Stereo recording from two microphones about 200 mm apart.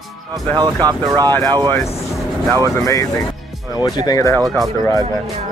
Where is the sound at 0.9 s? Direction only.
15° right (ahead or behind).